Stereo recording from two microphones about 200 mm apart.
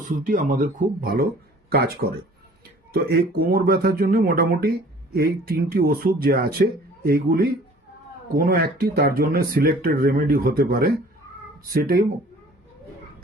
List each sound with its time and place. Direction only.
0.0 s speech: 40° right (ahead or behind)